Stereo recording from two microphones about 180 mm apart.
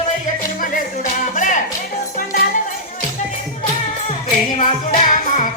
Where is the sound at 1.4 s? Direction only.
45° left (ahead or behind).